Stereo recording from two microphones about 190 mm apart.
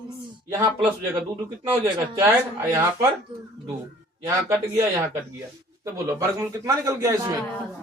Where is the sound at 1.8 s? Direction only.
20° right (ahead or behind).